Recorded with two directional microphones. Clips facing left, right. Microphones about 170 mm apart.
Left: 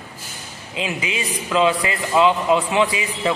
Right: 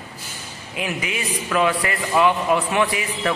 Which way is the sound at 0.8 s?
20° left (ahead or behind).